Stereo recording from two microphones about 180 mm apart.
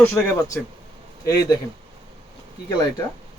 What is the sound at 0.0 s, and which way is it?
Speech, 10° left (ahead or behind).